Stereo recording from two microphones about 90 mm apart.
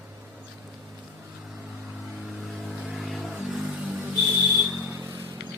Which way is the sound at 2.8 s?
Centre (ahead or behind).